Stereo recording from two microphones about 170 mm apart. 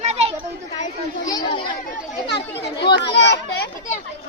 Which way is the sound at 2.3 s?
90° left.